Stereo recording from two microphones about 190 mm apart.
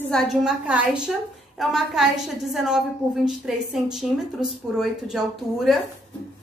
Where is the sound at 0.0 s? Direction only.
5° left (ahead or behind).